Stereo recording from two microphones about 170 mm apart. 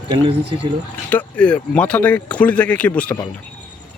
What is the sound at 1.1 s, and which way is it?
Speech, 10° left (ahead or behind).